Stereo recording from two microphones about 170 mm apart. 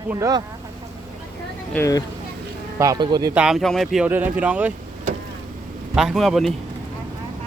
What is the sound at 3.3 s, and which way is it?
Speech, 5° right (ahead or behind).